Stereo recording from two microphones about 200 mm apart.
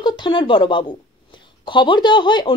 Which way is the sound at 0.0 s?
20° left (ahead or behind).